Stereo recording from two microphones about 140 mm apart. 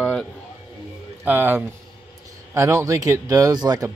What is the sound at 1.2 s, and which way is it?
Speech, 15° right (ahead or behind).